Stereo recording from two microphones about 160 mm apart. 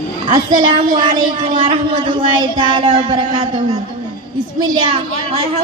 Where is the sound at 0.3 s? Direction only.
30° right (ahead or behind).